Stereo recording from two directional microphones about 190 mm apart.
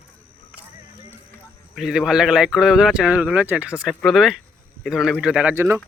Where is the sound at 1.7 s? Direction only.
Centre (ahead or behind).